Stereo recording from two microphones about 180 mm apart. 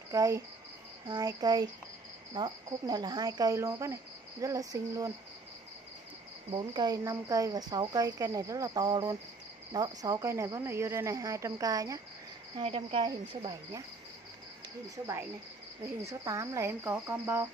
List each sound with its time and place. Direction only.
0.1 s speech: 20° right (ahead or behind)
6.5 s speech: 25° right (ahead or behind)
12.5 s speech: 30° right (ahead or behind)
16.0 s speech: 15° right (ahead or behind)